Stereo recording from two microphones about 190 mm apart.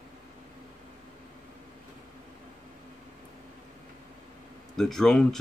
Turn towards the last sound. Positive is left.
turn(degrees=5)  # may be behind; listen again after turning